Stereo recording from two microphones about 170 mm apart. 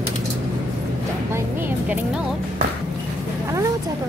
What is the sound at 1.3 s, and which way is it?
Speech, 10° right (ahead or behind).